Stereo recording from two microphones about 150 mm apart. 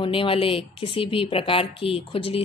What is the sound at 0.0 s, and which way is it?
Speech, 35° left (ahead or behind).